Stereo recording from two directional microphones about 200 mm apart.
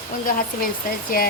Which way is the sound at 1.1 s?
50° left (ahead or behind).